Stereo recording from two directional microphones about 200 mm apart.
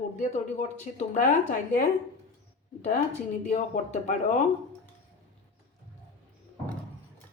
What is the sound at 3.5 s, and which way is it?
Speech, 35° left (ahead or behind).